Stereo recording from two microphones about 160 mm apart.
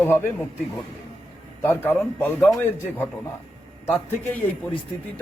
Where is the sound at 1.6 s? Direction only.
15° left (ahead or behind).